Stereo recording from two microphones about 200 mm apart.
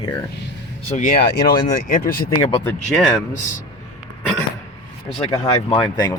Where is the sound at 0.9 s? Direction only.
45° left (ahead or behind).